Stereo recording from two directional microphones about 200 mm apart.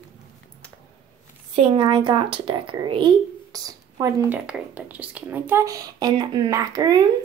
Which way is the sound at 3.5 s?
20° right (ahead or behind).